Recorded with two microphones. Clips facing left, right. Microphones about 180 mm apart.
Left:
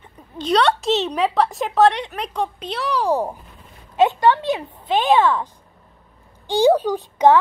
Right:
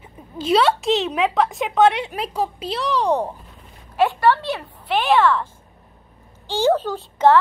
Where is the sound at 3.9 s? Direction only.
20° left (ahead or behind).